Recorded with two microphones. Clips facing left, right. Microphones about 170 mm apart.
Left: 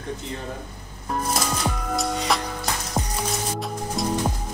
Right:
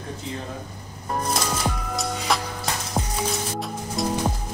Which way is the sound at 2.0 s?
Centre (ahead or behind).